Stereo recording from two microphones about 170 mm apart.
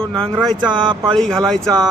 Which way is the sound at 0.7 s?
25° right (ahead or behind).